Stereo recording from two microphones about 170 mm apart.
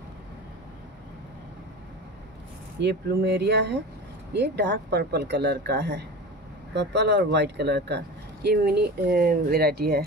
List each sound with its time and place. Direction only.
2.8 s speech: 75° right (ahead or behind)